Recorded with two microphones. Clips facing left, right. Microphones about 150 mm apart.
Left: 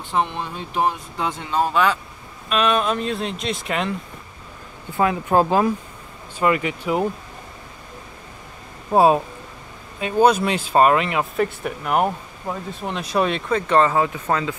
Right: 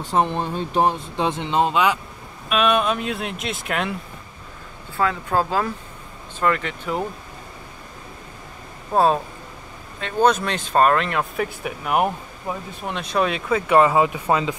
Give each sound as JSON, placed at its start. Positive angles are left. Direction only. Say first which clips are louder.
{"t": 0.0, "sound": "speech", "louder": "right 2 dB", "side_deg": -40}
{"t": 2.5, "sound": "speech", "louder": "even", "side_deg": 0}
{"t": 4.9, "sound": "speech", "louder": "left 3 dB", "side_deg": 20}
{"t": 8.9, "sound": "speech", "louder": "left 3 dB", "side_deg": 10}